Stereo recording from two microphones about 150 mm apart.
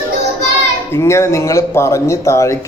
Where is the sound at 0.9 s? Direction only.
20° left (ahead or behind).